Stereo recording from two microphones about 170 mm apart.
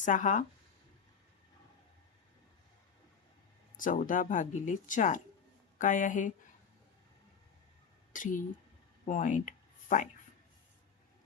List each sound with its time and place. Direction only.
0.0 s speech: 50° left (ahead or behind)
3.8 s speech: 50° left (ahead or behind)
8.1 s speech: 50° left (ahead or behind)